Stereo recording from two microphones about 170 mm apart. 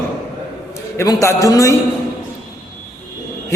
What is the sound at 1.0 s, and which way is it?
Speech, 20° left (ahead or behind).